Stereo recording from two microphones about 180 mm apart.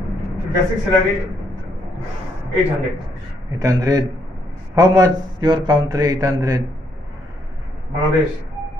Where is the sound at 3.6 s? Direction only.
20° right (ahead or behind).